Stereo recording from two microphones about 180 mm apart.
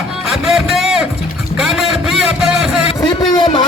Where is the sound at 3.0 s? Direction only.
25° left (ahead or behind).